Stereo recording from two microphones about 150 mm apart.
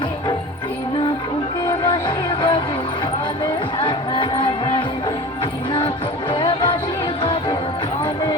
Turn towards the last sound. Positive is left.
turn(degrees=35)  # may be behind; listen again after turning